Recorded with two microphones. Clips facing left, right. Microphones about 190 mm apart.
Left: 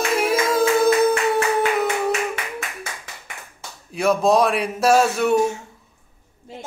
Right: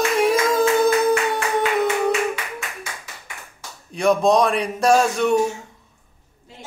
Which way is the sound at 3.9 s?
5° left (ahead or behind).